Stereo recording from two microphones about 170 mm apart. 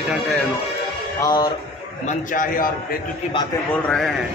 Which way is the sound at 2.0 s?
50° left (ahead or behind).